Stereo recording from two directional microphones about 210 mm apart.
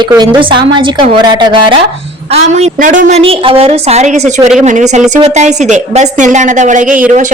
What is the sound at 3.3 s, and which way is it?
A woman's voice, 25° right (ahead or behind).